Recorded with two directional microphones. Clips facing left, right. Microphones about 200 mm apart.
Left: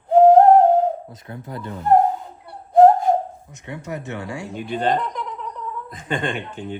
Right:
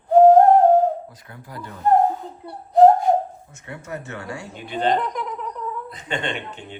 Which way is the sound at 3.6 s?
15° left (ahead or behind).